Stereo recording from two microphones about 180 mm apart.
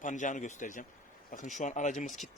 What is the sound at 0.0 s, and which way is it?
Speech, 45° left (ahead or behind).